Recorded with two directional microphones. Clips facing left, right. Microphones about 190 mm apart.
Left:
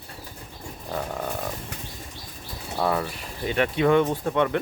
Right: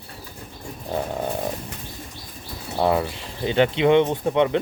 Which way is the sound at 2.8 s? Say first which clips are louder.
Right 4 dB; 25° right (ahead or behind).